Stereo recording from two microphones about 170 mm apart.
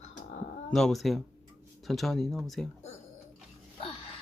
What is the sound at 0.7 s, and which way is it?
Speech, centre (ahead or behind).